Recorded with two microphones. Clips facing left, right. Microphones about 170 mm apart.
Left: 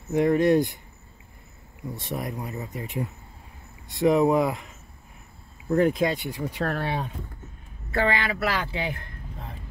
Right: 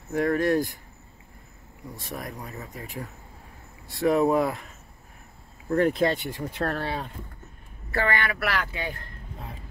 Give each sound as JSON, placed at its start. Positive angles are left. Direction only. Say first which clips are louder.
{"t": 0.1, "sound": "a woman's voice", "louder": "left 3 dB", "side_deg": 20}
{"t": 2.0, "sound": "speech", "louder": "left 4 dB", "side_deg": 0}
{"t": 2.5, "sound": "a woman's voice", "louder": "left 4 dB", "side_deg": 20}
{"t": 3.9, "sound": "a woman's voice", "louder": "left 2 dB", "side_deg": 20}
{"t": 5.7, "sound": "speech", "louder": "left 1 dB", "side_deg": 0}
{"t": 6.8, "sound": "a woman's voice", "louder": "left 2 dB", "side_deg": 15}